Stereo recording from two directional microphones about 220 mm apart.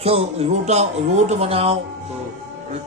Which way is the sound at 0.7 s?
30° right (ahead or behind).